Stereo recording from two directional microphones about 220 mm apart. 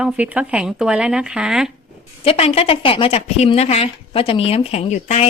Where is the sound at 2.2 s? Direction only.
25° left (ahead or behind).